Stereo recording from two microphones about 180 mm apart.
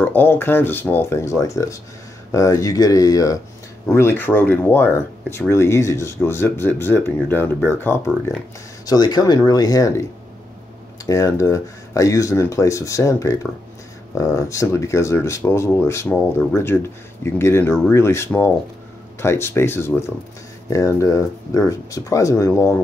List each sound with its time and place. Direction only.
0.0 s speech: 10° left (ahead or behind)
11.1 s speech: 20° left (ahead or behind)